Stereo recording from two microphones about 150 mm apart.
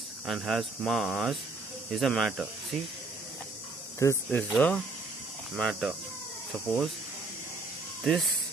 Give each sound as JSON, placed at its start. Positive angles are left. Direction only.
{"t": 0.3, "sound": "speech", "side_deg": 0}
{"t": 4.0, "sound": "speech", "side_deg": 15}
{"t": 8.0, "sound": "speech", "side_deg": 0}